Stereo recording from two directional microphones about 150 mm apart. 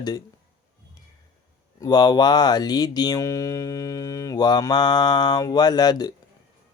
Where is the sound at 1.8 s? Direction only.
25° left (ahead or behind).